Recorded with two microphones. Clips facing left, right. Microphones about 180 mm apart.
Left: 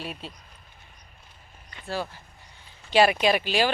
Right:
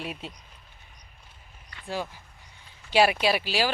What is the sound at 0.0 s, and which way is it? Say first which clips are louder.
Speech: right 1 dB; 25° left (ahead or behind).